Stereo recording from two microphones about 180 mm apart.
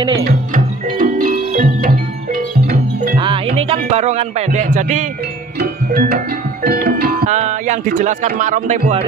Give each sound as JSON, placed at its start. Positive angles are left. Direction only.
{"t": 0.9, "sound": "music", "side_deg": -50}
{"t": 3.2, "sound": "music", "side_deg": -30}
{"t": 5.6, "sound": "music", "side_deg": -55}
{"t": 7.2, "sound": "speech", "side_deg": -40}